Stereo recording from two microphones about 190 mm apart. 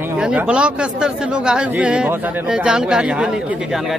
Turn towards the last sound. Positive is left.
turn(degrees=-5)  # may be behind; listen again after turning